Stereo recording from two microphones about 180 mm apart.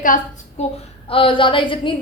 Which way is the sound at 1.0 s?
30° left (ahead or behind).